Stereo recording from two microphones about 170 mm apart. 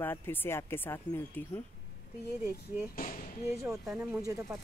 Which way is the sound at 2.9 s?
50° left (ahead or behind).